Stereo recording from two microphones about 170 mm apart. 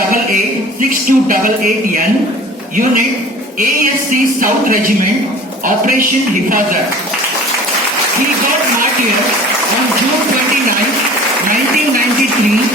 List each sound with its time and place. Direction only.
0.8 s music: 55° right (ahead or behind)